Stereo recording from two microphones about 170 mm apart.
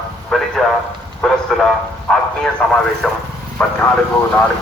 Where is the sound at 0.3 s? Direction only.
Centre (ahead or behind).